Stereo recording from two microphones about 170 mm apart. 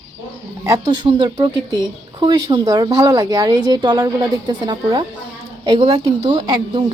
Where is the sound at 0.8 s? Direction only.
25° right (ahead or behind).